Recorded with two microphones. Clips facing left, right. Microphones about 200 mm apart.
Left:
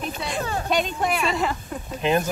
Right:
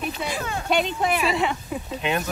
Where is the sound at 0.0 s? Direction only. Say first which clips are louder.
Right 1 dB; 5° right (ahead or behind).